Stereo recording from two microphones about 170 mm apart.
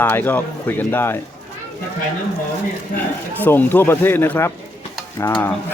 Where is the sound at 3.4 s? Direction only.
10° left (ahead or behind).